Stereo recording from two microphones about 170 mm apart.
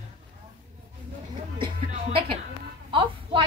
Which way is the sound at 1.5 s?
30° right (ahead or behind).